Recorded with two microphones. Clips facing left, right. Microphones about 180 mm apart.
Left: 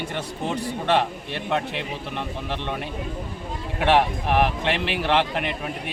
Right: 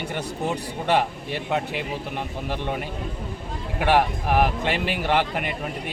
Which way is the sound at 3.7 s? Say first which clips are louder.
Left 1 dB; 5° right (ahead or behind).